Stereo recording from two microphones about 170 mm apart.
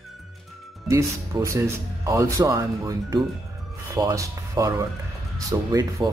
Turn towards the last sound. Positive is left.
turn(degrees=-20)  # may be behind; listen again after turning